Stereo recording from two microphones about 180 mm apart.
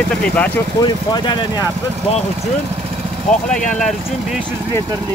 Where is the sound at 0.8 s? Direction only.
25° left (ahead or behind).